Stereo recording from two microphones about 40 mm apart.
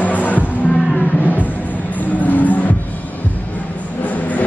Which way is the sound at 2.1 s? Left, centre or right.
Left.